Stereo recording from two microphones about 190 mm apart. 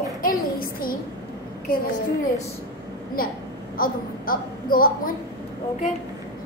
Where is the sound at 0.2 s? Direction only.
50° left (ahead or behind).